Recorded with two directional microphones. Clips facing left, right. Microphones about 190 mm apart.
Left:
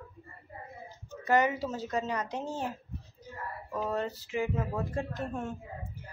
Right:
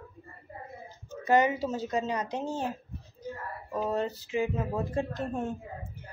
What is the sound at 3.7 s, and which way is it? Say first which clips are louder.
Speech: right 3 dB; 20° right (ahead or behind).